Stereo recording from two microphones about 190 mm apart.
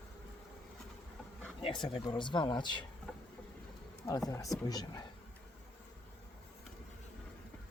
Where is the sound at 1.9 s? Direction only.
25° left (ahead or behind).